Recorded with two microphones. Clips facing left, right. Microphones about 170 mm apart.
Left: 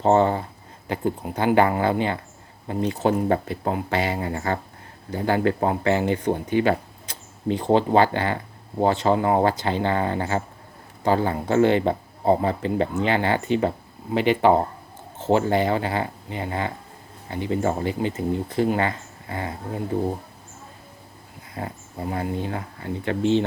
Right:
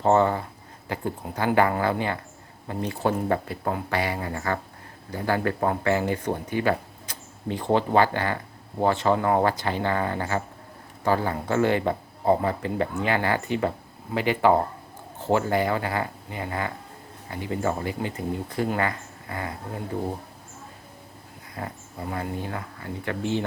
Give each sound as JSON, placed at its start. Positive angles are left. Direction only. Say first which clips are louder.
{"t": 0.0, "sound": "speech", "louder": "left 2 dB", "side_deg": 20}
{"t": 21.5, "sound": "speech", "louder": "left 3 dB", "side_deg": 25}